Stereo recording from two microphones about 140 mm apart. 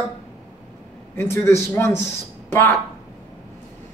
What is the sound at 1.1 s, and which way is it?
Speech, 15° left (ahead or behind).